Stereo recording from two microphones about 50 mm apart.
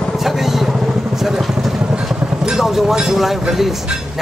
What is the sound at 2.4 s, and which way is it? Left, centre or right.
Speech, centre.